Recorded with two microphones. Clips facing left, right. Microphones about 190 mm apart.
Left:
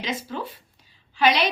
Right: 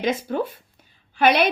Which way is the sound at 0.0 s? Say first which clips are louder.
Right 7 dB; 50° right (ahead or behind).